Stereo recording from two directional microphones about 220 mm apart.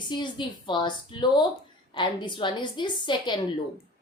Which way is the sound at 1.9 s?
20° left (ahead or behind).